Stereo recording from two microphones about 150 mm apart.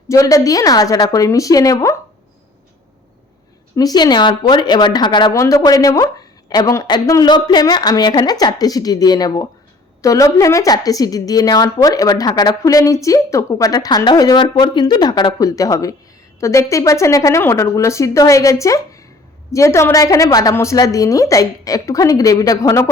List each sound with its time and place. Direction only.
0.1 s a woman's voice: 20° left (ahead or behind)
3.8 s a woman's voice: 25° left (ahead or behind)